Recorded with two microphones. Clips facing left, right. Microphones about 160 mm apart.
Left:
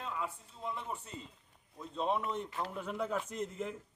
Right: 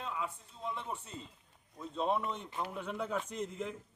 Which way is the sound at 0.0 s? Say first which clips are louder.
Even; 5° left (ahead or behind).